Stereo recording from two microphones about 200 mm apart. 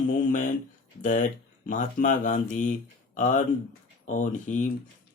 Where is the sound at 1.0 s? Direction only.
40° left (ahead or behind).